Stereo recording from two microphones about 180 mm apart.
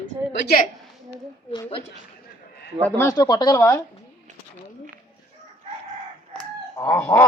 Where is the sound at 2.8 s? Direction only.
15° left (ahead or behind).